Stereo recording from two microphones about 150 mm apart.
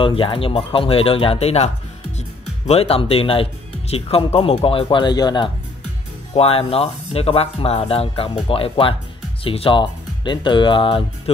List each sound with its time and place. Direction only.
0.0 s speech: 35° left (ahead or behind)
6.3 s speech: 40° left (ahead or behind)